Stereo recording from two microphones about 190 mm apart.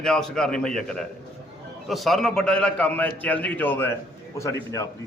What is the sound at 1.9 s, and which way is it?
A man's voice, centre (ahead or behind).